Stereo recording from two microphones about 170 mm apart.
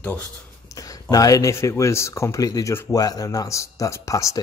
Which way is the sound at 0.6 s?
20° left (ahead or behind).